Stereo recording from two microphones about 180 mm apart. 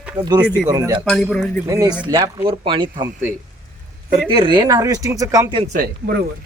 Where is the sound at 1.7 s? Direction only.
20° right (ahead or behind).